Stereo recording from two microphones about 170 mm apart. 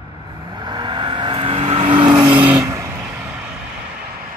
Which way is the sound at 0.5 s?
25° right (ahead or behind).